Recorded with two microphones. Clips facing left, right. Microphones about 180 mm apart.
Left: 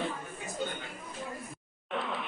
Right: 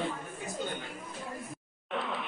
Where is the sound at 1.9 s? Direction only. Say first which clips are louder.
Even; centre (ahead or behind).